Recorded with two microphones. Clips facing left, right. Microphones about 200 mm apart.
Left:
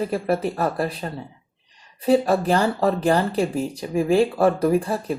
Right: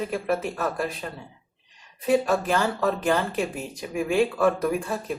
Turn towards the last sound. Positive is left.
turn(degrees=35)  # may be behind; listen again after turning